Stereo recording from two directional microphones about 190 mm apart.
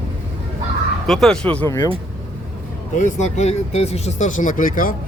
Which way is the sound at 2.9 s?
40° left (ahead or behind).